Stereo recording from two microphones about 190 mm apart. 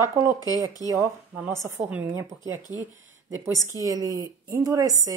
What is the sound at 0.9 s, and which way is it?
A woman's voice, 10° right (ahead or behind).